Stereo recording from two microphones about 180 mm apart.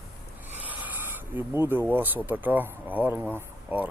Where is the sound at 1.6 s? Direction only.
10° right (ahead or behind).